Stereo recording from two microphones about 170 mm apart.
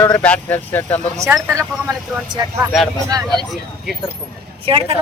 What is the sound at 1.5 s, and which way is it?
Speech, 20° right (ahead or behind).